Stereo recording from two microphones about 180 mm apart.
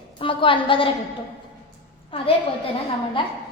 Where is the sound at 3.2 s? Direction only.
25° left (ahead or behind).